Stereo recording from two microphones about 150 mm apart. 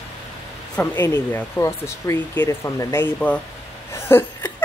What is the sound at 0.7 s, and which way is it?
Speech, 15° left (ahead or behind).